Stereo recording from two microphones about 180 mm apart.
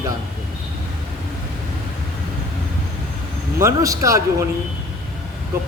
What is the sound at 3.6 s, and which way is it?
Speech, 15° right (ahead or behind).